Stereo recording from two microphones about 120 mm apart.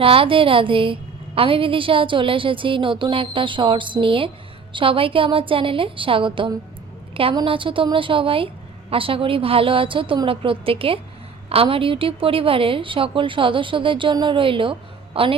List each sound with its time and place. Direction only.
0.0 s a woman's voice: 50° right (ahead or behind)